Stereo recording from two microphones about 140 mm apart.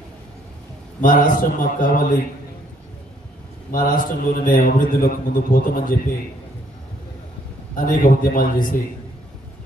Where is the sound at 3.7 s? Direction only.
75° left (ahead or behind).